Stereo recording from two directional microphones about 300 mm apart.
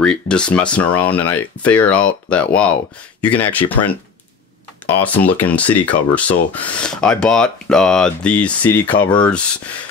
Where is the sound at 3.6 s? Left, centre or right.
Left.